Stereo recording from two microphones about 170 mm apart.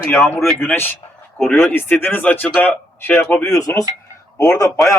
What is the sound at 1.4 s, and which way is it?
Speech, centre (ahead or behind).